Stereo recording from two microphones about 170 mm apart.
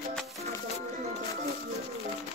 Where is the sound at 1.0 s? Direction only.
40° right (ahead or behind).